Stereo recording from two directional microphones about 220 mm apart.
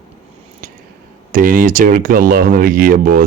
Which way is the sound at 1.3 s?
40° right (ahead or behind).